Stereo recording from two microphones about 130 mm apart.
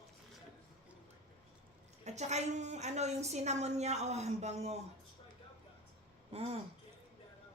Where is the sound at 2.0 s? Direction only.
60° right (ahead or behind).